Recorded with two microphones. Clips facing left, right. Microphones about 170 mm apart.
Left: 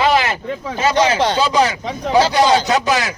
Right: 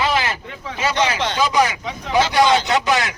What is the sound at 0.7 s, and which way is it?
A man's voice, 35° left (ahead or behind).